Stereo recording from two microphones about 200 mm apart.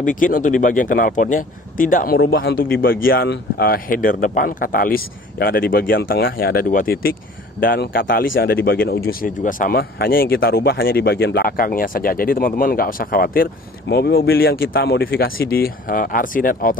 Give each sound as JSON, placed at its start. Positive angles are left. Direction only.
{"t": 0.0, "sound": "speech", "side_deg": 40}